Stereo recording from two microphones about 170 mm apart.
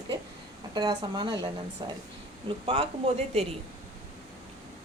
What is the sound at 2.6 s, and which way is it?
Speech, 30° right (ahead or behind).